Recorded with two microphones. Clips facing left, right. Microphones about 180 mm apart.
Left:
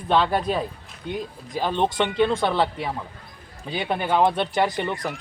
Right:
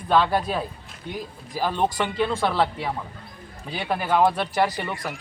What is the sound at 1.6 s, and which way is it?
Speech, 25° left (ahead or behind).